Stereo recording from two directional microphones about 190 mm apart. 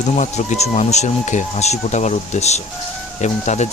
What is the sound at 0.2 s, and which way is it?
Speech, 35° left (ahead or behind).